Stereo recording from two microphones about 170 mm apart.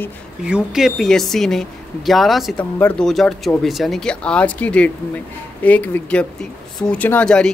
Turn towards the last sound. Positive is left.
turn(degrees=5)  # may be behind; listen again after turning